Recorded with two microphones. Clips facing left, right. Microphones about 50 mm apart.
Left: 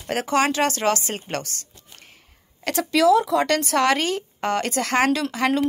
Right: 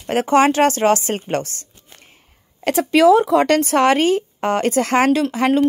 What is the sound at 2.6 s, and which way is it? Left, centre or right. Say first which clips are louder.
Speech: right 5 dB; right.